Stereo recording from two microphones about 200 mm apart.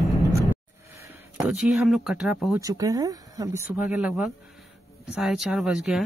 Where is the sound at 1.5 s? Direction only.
Centre (ahead or behind).